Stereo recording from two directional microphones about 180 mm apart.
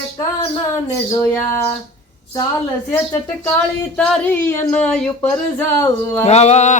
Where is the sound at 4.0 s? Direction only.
10° left (ahead or behind).